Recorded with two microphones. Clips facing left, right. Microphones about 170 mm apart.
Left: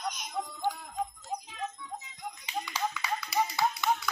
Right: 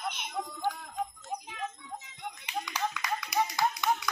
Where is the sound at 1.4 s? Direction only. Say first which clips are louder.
Even; 60° right (ahead or behind).